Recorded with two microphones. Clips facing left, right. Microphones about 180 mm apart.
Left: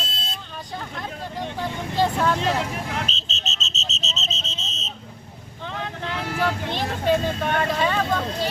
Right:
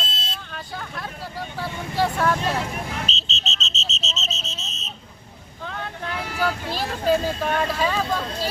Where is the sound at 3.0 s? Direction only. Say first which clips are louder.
Even; 50° left (ahead or behind); by 4.9 s 25° left (ahead or behind).